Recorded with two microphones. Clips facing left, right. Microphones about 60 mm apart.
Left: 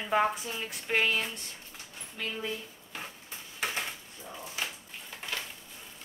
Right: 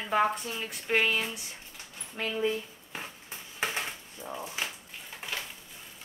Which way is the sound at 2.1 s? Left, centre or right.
Right.